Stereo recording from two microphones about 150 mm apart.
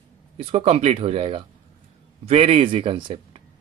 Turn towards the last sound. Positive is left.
turn(degrees=-35)  # may be behind; listen again after turning